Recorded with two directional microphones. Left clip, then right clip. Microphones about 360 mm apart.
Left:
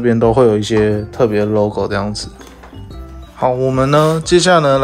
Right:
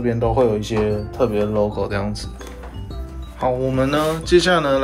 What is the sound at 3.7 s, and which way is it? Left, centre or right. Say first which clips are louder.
Speech: left 7 dB; centre.